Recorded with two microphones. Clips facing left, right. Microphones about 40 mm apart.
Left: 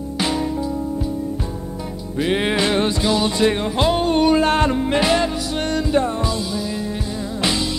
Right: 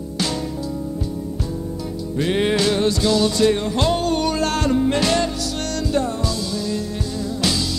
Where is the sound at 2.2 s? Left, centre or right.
Centre.